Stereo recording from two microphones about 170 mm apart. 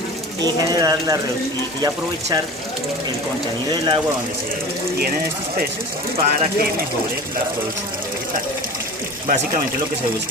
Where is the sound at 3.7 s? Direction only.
30° right (ahead or behind).